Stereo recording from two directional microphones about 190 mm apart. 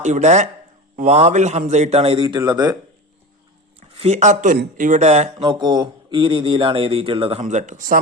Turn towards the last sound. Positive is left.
turn(degrees=-45)  # may be behind; listen again after turning